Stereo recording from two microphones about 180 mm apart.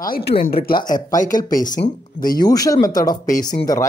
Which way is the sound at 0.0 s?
60° left (ahead or behind).